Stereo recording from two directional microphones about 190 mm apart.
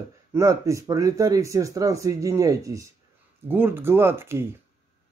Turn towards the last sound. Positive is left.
turn(degrees=-15)  # may be behind; listen again after turning